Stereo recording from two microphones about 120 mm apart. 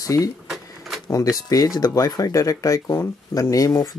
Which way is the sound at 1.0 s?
30° left (ahead or behind).